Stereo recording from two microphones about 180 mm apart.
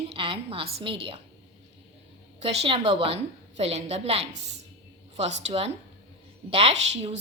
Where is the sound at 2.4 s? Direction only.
30° right (ahead or behind).